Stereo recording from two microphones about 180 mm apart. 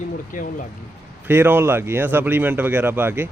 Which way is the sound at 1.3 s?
10° right (ahead or behind).